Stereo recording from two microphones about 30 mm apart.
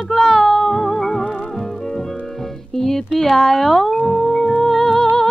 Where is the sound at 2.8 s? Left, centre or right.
Centre.